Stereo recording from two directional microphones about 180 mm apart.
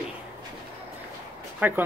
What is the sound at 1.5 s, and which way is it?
Speech, 10° right (ahead or behind).